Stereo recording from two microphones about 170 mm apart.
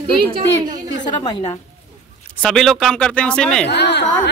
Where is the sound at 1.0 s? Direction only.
25° left (ahead or behind).